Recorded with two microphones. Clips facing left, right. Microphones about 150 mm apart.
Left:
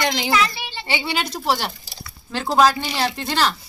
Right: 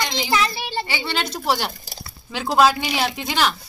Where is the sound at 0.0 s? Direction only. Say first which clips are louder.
Left 3 dB; 60° left (ahead or behind).